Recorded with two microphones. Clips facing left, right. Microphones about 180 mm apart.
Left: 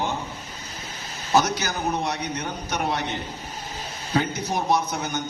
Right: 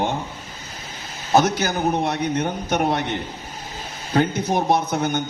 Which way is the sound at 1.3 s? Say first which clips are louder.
Right 4 dB; 55° right (ahead or behind).